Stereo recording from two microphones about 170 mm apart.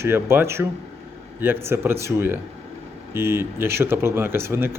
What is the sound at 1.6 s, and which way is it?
Speech, 15° right (ahead or behind).